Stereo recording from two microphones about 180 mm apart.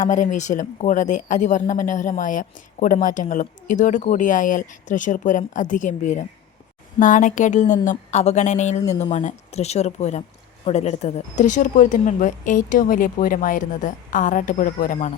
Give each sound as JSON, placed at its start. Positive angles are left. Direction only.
{"t": 0.0, "sound": "speech", "side_deg": 45}